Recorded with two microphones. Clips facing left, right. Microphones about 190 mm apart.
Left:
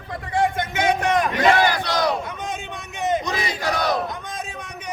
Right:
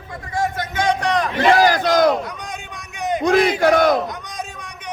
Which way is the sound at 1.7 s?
50° right (ahead or behind).